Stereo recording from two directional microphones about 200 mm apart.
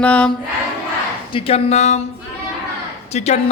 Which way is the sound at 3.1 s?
35° left (ahead or behind).